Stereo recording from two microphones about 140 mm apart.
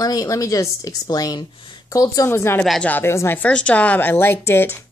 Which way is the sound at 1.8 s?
25° left (ahead or behind).